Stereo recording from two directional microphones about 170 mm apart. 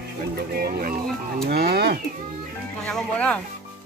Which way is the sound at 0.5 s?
65° right (ahead or behind).